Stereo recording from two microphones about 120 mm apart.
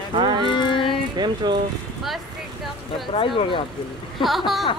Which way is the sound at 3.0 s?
45° left (ahead or behind).